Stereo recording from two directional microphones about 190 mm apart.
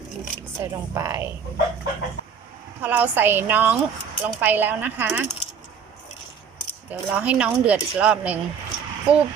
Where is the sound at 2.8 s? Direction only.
10° right (ahead or behind).